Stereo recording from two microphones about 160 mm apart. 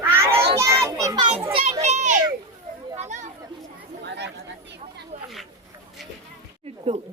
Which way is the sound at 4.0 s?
90° right.